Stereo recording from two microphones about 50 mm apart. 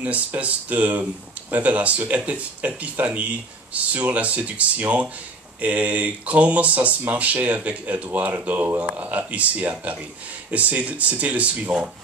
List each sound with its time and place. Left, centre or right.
0.0 s speech: right